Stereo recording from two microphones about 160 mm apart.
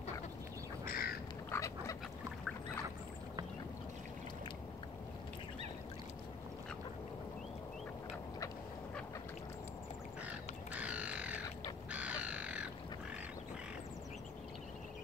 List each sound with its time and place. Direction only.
0.8 s bird: 70° left (ahead or behind)
1.5 s duck: 20° left (ahead or behind)
10.2 s bird: 10° right (ahead or behind)